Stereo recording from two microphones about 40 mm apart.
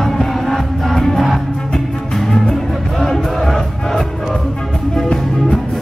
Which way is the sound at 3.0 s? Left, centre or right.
Centre.